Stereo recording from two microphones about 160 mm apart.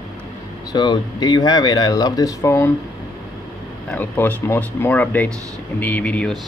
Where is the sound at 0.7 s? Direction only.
25° left (ahead or behind).